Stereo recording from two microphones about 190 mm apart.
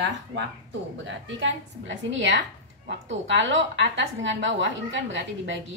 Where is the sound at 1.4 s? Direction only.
75° right (ahead or behind).